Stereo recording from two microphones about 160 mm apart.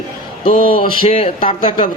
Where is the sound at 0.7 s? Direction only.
35° left (ahead or behind).